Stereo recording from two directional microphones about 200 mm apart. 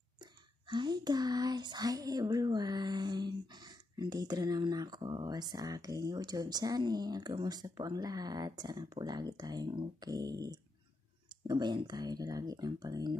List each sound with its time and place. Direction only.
0.2 s speech: 20° right (ahead or behind)